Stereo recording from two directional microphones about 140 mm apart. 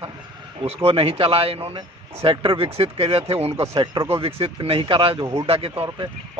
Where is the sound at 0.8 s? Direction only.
40° right (ahead or behind).